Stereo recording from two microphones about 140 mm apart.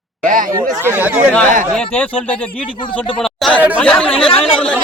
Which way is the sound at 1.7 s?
10° left (ahead or behind).